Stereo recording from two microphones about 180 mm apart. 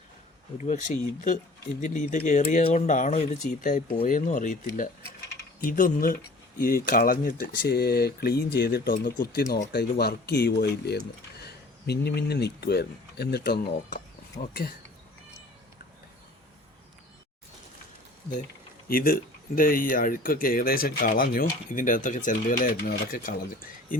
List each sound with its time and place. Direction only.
0.6 s speech: 40° left (ahead or behind)
5.5 s speech: 50° left (ahead or behind)
14.4 s speech: 45° left (ahead or behind)
18.9 s speech: 55° left (ahead or behind)